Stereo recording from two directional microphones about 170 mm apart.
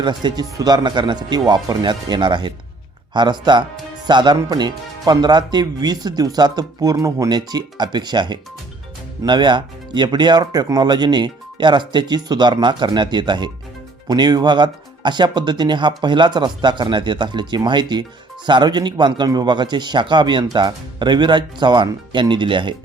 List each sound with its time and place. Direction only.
0.0 s speech: 25° right (ahead or behind)